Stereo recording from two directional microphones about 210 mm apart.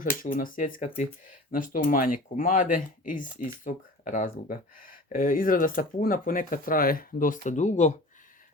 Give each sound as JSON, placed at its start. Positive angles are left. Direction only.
{"t": 0.2, "sound": "speech", "side_deg": 40}